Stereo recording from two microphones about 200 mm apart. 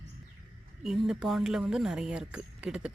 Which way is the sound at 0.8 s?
Centre (ahead or behind).